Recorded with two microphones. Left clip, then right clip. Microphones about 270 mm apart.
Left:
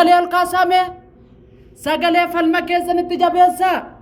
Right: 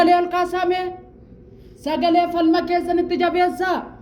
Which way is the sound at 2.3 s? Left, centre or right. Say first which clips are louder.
Left 2 dB; left.